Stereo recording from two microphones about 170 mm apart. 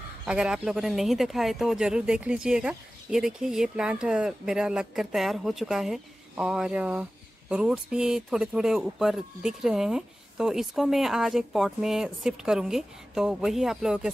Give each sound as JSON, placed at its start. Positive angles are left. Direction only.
{"t": 0.2, "sound": "speech", "side_deg": -5}